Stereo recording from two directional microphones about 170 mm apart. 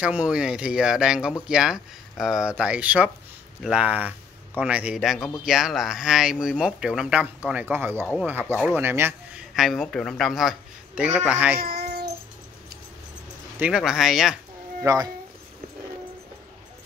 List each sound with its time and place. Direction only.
0.0 s speech: 5° right (ahead or behind)
11.6 s child singing: 65° right (ahead or behind)
13.6 s speech: 5° right (ahead or behind)
14.8 s speech: 20° right (ahead or behind)